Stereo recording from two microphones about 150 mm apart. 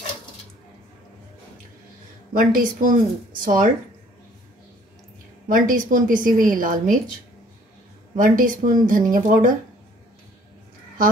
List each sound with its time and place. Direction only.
2.3 s speech: 65° right (ahead or behind)
5.5 s a woman's voice: 65° right (ahead or behind)
8.2 s a woman's voice: 65° right (ahead or behind)